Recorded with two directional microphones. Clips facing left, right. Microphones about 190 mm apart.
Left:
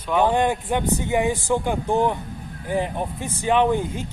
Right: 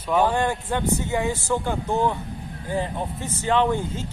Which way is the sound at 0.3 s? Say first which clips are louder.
Left 3 dB; 15° left (ahead or behind).